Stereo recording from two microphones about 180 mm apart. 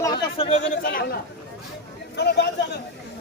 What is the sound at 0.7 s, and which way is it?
Speech, 50° left (ahead or behind).